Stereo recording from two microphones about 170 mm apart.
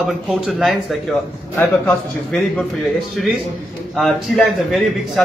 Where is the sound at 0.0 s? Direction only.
Centre (ahead or behind).